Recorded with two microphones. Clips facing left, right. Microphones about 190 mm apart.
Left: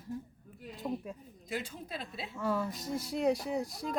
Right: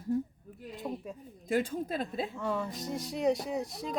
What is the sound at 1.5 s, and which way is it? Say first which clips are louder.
Speech: right 9 dB; 50° right (ahead or behind).